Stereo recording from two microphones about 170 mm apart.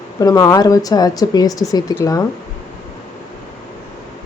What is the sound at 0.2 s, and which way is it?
Speech, 20° left (ahead or behind).